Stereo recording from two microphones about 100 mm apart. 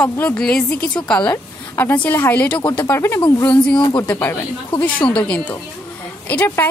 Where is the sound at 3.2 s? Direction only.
15° left (ahead or behind).